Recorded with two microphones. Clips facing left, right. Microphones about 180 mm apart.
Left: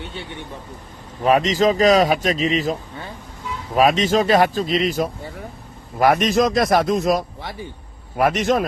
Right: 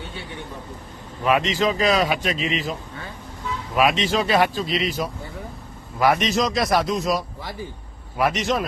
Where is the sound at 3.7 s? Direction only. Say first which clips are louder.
Left 4 dB; 40° left (ahead or behind).